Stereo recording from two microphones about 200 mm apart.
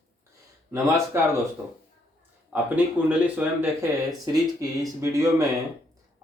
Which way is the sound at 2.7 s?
10° right (ahead or behind).